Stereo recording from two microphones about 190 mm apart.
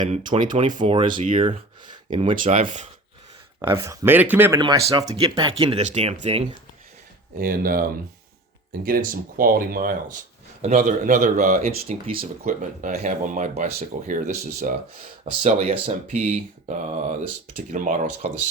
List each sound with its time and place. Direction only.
0.1 s speech: 25° right (ahead or behind)
2.5 s speech: 40° right (ahead or behind)
3.8 s speech: 15° right (ahead or behind)
4.6 s speech: 20° right (ahead or behind)
7.3 s speech: 50° right (ahead or behind)
10.6 s speech: 35° right (ahead or behind)